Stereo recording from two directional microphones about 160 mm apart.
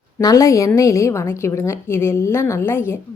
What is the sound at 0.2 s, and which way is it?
A woman's voice, 20° left (ahead or behind).